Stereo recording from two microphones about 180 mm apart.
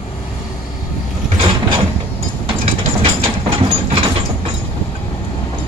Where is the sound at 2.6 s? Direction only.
35° right (ahead or behind).